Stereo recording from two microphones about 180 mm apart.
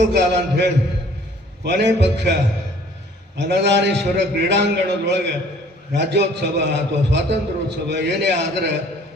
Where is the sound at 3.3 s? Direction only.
75° right (ahead or behind).